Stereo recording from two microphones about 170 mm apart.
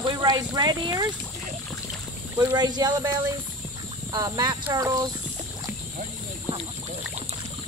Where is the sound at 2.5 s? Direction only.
25° right (ahead or behind).